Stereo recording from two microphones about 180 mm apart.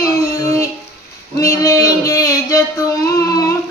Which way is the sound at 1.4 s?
20° left (ahead or behind).